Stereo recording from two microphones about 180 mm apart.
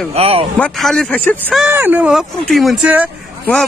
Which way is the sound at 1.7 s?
10° right (ahead or behind).